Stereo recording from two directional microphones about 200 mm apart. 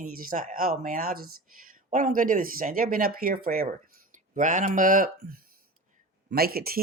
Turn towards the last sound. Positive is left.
turn(degrees=-50)  # may be behind; listen again after turning